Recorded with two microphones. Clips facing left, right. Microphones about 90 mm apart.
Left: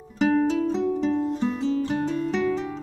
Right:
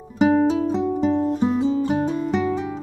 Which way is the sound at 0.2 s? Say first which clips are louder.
Right 4 dB; 15° right (ahead or behind).